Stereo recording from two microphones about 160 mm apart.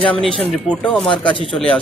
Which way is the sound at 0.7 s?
5° left (ahead or behind).